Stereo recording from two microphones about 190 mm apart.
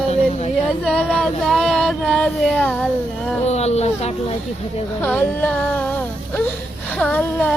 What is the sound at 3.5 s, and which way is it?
Speech, 35° left (ahead or behind).